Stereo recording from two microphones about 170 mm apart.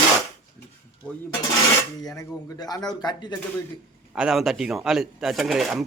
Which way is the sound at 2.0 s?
20° left (ahead or behind).